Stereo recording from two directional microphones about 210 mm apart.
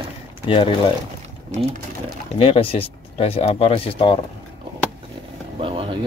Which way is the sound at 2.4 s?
25° left (ahead or behind).